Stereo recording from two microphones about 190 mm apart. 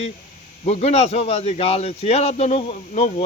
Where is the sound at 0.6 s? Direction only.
35° left (ahead or behind).